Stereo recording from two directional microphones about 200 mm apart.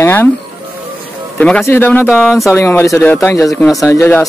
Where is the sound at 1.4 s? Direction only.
10° left (ahead or behind).